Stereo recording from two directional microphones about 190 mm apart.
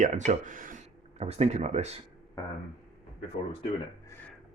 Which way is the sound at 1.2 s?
35° right (ahead or behind).